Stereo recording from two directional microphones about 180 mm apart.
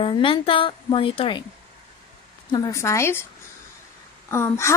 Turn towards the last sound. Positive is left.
turn(degrees=15)  # may be behind; listen again after turning